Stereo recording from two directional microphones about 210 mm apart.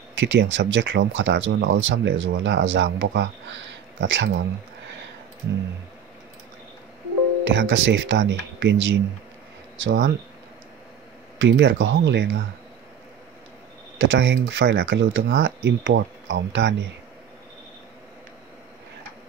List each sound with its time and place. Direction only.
0.1 s speech: 60° right (ahead or behind)
7.4 s speech: 60° right (ahead or behind)
11.3 s speech: 60° right (ahead or behind)
13.9 s speech: 60° right (ahead or behind)